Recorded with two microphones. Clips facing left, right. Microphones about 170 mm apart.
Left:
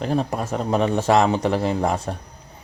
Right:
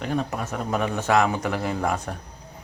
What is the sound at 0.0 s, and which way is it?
Speech, 30° left (ahead or behind).